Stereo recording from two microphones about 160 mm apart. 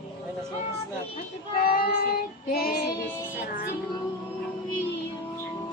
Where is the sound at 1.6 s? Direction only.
65° left (ahead or behind).